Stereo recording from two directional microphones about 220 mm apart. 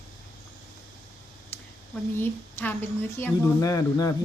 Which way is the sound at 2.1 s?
10° left (ahead or behind).